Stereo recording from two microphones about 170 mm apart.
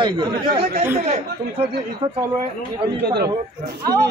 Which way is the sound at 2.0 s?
35° right (ahead or behind).